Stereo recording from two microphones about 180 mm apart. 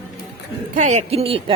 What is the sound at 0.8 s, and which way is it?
Speech, 40° right (ahead or behind).